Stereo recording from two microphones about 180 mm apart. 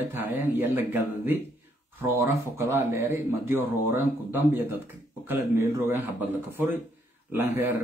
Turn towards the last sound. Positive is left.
turn(degrees=-10)  # may be behind; listen again after turning